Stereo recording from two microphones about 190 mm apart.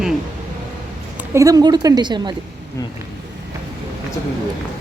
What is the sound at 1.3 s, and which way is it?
Speech, 20° right (ahead or behind).